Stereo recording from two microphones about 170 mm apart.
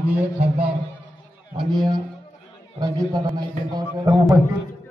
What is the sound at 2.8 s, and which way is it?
A man's voice, 20° right (ahead or behind).